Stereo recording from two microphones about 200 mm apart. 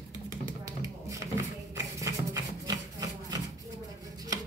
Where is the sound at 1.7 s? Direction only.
15° right (ahead or behind).